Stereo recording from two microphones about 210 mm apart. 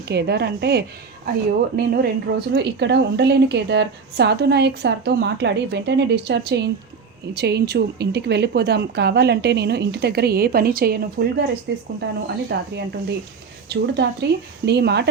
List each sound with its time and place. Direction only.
0.1 s a woman's voice: 50° right (ahead or behind)